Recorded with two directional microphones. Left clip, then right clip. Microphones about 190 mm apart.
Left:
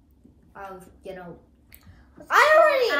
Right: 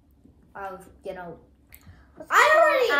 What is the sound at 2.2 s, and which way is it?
Speech, 10° left (ahead or behind).